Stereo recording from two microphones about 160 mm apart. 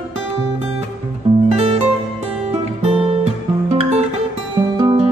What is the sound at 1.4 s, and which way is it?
Music, 40° right (ahead or behind).